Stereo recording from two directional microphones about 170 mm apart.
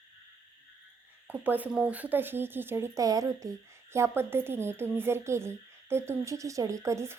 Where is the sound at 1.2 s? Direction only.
10° right (ahead or behind).